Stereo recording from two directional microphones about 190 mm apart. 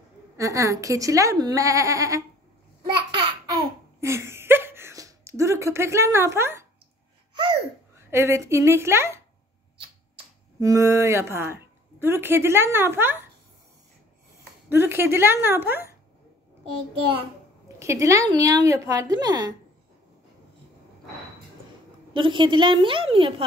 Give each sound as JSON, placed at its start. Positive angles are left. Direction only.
{"t": 0.4, "sound": "speech", "side_deg": -15}
{"t": 2.8, "sound": "babbling", "side_deg": -25}
{"t": 4.0, "sound": "a sound", "side_deg": -15}
{"t": 8.1, "sound": "speech", "side_deg": -15}
{"t": 14.7, "sound": "speech", "side_deg": -10}
{"t": 17.7, "sound": "a woman's voice", "side_deg": -15}
{"t": 22.1, "sound": "a woman's voice", "side_deg": -25}